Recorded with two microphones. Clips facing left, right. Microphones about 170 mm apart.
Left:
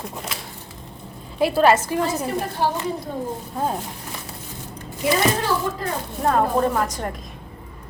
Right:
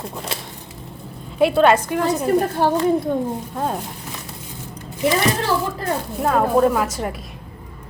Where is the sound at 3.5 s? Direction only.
5° left (ahead or behind).